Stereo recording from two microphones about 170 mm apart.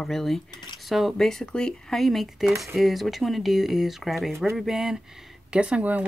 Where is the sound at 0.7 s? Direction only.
Centre (ahead or behind).